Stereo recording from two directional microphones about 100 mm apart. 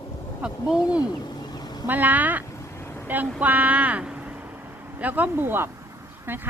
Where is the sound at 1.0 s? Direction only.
45° left (ahead or behind).